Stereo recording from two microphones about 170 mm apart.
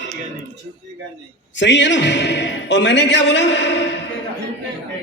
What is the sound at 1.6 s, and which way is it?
A man's voice, 90° left.